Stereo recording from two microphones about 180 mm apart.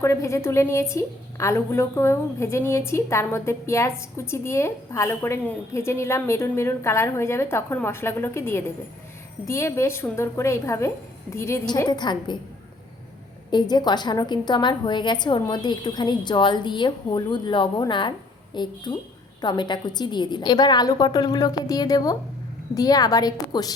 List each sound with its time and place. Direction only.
0.0 s a woman's voice: 15° left (ahead or behind)
13.5 s a woman's voice: 25° left (ahead or behind)